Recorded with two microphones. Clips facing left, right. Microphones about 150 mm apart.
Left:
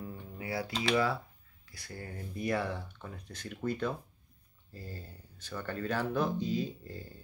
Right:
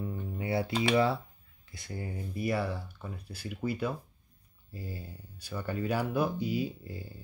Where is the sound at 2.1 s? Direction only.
5° right (ahead or behind).